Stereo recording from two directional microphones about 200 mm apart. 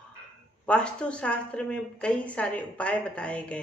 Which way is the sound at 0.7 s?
5° left (ahead or behind).